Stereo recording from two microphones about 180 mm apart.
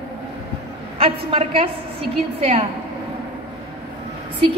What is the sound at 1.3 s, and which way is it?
Speech, 30° right (ahead or behind).